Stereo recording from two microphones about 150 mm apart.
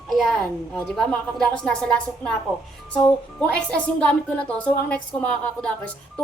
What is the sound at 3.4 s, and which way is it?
A woman's voice, 10° left (ahead or behind).